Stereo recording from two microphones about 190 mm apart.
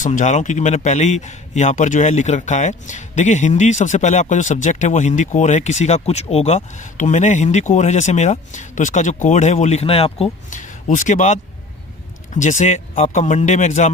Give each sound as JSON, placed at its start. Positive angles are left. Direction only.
{"t": 0.0, "sound": "a man's voice", "side_deg": 40}
{"t": 12.4, "sound": "a man's voice", "side_deg": 40}